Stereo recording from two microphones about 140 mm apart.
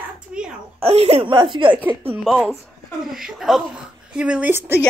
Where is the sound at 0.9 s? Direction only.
45° right (ahead or behind).